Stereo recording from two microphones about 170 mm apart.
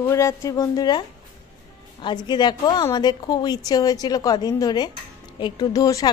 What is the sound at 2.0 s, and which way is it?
A woman's voice, 25° left (ahead or behind).